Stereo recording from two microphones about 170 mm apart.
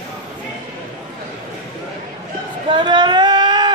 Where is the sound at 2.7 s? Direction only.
25° right (ahead or behind).